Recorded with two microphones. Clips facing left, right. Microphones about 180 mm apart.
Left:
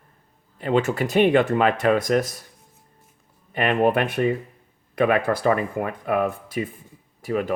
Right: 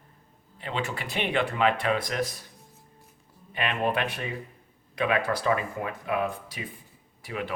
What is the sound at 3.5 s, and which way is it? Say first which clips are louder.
A man's voice: left 8 dB; 50° left (ahead or behind).